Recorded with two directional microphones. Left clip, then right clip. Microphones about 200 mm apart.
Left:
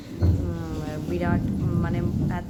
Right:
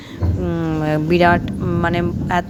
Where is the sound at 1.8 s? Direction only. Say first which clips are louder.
Right 10 dB; 40° right (ahead or behind).